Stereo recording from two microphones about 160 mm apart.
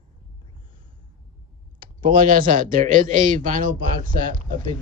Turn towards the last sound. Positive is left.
turn(degrees=-60)  # may be behind; listen again after turning